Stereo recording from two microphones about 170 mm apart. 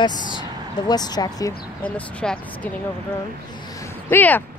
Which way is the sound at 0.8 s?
25° left (ahead or behind).